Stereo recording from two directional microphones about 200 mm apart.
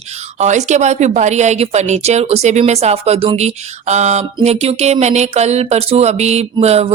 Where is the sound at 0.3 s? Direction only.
35° right (ahead or behind).